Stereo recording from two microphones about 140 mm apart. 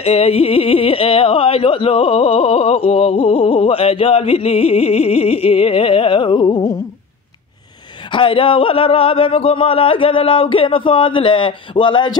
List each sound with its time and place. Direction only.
0.0 s speech: 45° left (ahead or behind); by 6.8 s 30° left (ahead or behind)
8.1 s speech: 40° left (ahead or behind)